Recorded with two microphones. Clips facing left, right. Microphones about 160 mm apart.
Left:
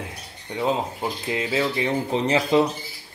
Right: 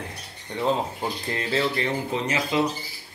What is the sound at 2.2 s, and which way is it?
Speech, 30° left (ahead or behind).